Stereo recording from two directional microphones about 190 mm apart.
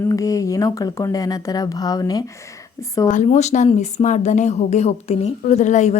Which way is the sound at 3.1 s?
40° left (ahead or behind).